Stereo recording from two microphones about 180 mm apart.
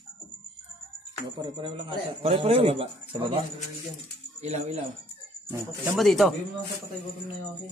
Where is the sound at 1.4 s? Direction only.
25° right (ahead or behind).